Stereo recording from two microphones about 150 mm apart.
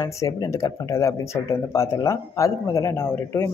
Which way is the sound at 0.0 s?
20° left (ahead or behind).